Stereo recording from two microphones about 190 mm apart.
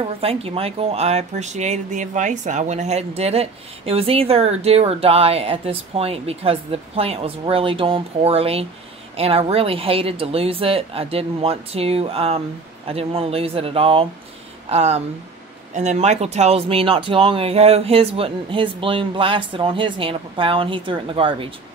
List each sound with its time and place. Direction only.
0.0 s speech: 30° right (ahead or behind)